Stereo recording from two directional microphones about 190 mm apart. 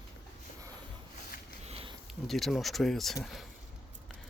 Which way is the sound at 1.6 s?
30° right (ahead or behind).